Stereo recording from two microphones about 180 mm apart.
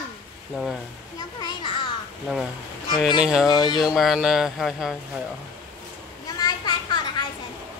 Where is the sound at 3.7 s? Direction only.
Centre (ahead or behind).